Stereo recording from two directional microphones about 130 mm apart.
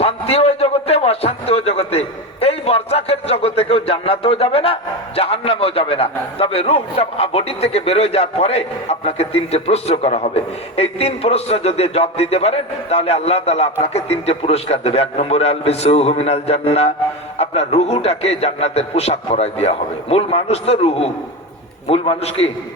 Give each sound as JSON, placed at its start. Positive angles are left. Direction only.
{"t": 0.0, "sound": "a man's voice", "side_deg": 50}